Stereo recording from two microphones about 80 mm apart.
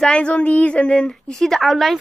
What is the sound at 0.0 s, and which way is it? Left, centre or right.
A woman's voice, centre.